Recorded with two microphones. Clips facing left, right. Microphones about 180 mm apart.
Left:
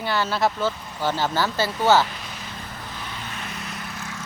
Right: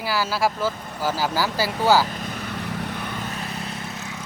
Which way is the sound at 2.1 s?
50° right (ahead or behind).